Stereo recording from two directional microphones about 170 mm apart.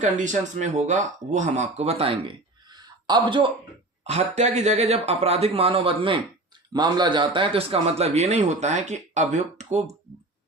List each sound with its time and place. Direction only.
0.0 s speech: 45° right (ahead or behind); by 3.4 s 25° right (ahead or behind)
4.0 s speech: 40° right (ahead or behind)